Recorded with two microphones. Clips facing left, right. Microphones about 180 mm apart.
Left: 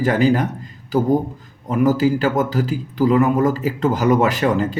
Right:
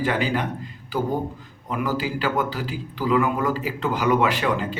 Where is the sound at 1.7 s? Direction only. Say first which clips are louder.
Left 9 dB; 45° left (ahead or behind).